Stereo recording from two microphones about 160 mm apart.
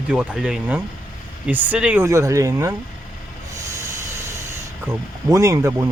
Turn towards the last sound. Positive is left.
turn(degrees=-20)  # may be behind; listen again after turning